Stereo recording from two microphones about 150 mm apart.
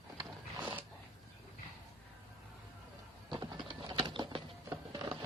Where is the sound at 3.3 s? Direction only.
25° right (ahead or behind).